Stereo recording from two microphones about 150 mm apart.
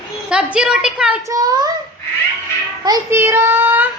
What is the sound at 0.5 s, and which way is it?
Speech, 5° right (ahead or behind).